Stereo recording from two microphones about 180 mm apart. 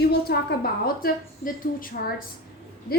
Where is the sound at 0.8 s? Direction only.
50° left (ahead or behind).